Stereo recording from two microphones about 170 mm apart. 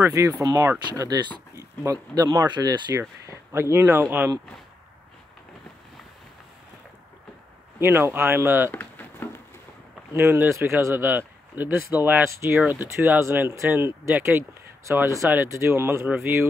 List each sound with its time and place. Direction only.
0.0 s speech: 20° right (ahead or behind)
3.0 s a sound: 15° right (ahead or behind)
3.7 s speech: 15° right (ahead or behind)
7.8 s speech: 15° right (ahead or behind)
8.7 s a sound: 10° left (ahead or behind)
10.1 s speech: 15° right (ahead or behind)